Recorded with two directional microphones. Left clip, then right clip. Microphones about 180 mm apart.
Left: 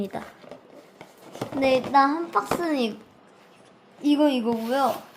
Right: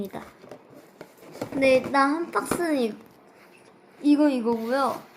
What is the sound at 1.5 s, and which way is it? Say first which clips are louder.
A child's voice: even; 10° left (ahead or behind).